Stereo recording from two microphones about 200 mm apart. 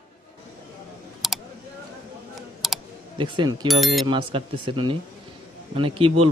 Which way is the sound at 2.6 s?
Centre (ahead or behind).